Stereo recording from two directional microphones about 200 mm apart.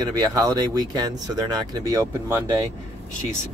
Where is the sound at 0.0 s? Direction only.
15° right (ahead or behind).